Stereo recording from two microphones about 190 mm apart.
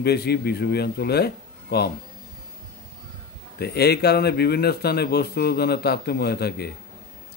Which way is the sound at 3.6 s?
55° left (ahead or behind).